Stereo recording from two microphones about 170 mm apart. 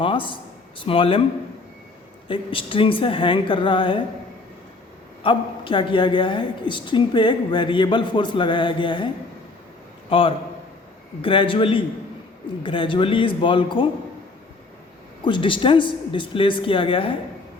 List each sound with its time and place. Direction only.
0.0 s a woman's voice: 30° left (ahead or behind)
2.2 s a woman's voice: 30° left (ahead or behind)
5.2 s a woman's voice: 30° left (ahead or behind)
10.1 s a man's voice: 30° left (ahead or behind)
15.2 s a woman's voice: 30° left (ahead or behind)